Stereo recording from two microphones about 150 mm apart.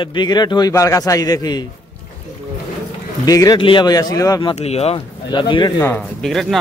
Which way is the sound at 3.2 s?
25° left (ahead or behind).